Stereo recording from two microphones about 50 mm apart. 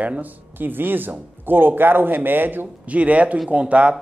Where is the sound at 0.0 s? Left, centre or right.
Right.